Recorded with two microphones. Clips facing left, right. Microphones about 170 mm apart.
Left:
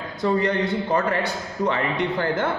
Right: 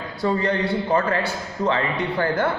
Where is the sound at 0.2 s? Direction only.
20° left (ahead or behind).